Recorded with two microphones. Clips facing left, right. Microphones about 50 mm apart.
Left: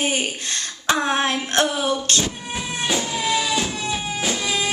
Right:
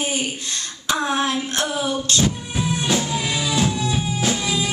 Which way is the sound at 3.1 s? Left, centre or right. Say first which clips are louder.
Left 2 dB; centre.